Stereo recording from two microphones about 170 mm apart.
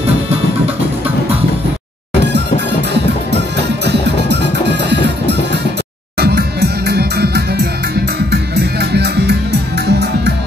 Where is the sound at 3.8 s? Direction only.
85° right.